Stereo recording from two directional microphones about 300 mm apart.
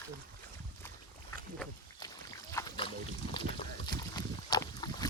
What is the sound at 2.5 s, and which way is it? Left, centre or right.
Boat, centre.